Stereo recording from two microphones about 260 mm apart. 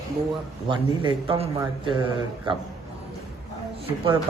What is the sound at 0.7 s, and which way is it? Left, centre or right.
A man's voice, centre.